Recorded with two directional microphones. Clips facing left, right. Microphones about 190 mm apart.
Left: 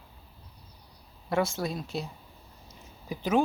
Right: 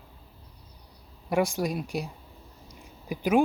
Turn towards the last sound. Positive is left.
turn(degrees=-10)  # may be behind; listen again after turning